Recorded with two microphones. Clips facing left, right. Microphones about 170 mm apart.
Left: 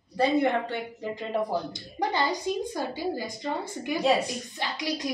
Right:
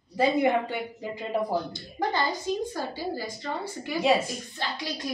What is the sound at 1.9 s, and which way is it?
A woman's voice, 15° left (ahead or behind).